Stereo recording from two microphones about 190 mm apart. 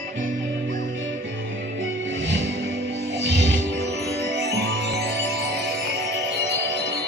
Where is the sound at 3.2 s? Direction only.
65° right (ahead or behind).